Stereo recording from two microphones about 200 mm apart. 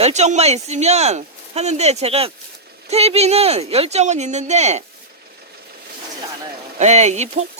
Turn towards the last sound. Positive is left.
turn(degrees=-35)  # may be behind; listen again after turning